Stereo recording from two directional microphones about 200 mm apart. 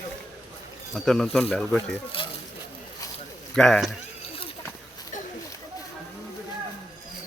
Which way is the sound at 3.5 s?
Centre (ahead or behind).